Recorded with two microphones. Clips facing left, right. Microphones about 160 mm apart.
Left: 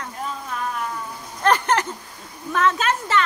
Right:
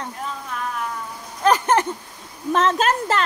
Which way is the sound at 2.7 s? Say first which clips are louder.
Right 2 dB; 40° right (ahead or behind).